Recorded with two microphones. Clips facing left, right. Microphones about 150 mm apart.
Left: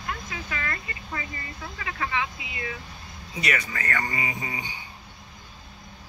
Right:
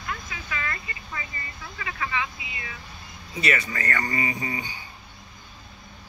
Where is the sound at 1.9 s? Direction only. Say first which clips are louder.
Left 1 dB; 55° left (ahead or behind).